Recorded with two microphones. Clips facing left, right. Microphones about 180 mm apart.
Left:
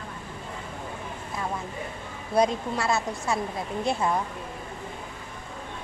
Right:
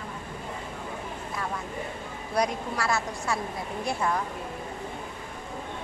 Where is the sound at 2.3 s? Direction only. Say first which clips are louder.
Left 4 dB; 25° left (ahead or behind).